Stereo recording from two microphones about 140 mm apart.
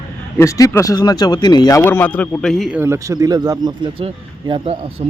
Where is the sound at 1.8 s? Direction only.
15° left (ahead or behind).